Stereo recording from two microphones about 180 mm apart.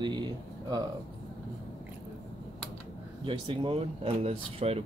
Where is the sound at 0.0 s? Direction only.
25° right (ahead or behind).